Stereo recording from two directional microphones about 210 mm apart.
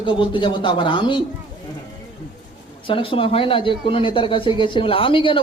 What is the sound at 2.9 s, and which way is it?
A man's voice, 25° left (ahead or behind).